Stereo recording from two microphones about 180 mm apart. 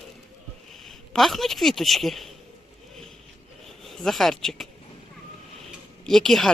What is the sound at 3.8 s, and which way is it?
Speech, centre (ahead or behind).